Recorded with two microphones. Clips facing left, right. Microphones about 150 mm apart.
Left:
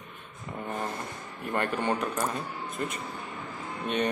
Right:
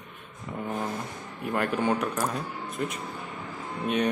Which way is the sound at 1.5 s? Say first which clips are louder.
Right 2 dB; 5° right (ahead or behind).